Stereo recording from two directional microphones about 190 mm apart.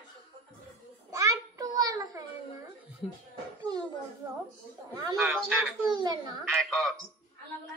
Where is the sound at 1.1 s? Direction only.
20° right (ahead or behind).